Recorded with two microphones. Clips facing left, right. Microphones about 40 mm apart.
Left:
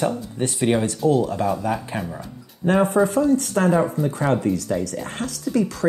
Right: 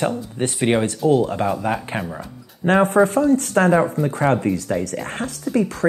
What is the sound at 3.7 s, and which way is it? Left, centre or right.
Speech, right.